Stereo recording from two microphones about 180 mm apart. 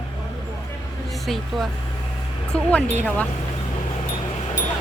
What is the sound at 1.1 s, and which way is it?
Speech, centre (ahead or behind).